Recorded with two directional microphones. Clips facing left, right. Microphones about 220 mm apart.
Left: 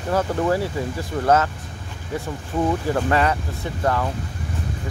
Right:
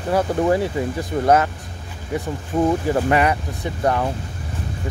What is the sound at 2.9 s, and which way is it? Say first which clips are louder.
Speech: right 2 dB; 15° right (ahead or behind).